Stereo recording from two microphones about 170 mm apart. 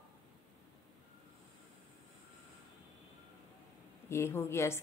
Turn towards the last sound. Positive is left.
turn(degrees=15)  # may be behind; listen again after turning